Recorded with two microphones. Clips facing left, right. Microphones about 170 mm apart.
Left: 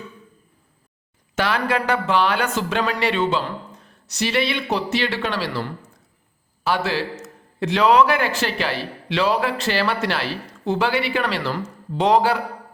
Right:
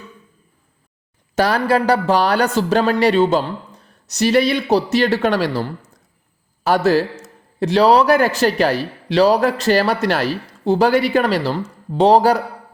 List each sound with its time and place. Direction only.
1.4 s a man's voice: 40° right (ahead or behind)